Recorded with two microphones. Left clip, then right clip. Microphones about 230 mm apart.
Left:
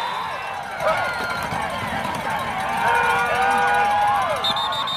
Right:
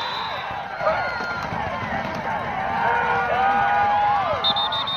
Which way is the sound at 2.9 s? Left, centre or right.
Left.